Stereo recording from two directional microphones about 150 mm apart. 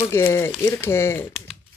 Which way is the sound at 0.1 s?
20° left (ahead or behind).